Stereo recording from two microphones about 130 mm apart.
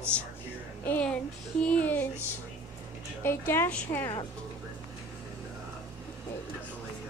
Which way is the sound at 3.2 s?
20° left (ahead or behind).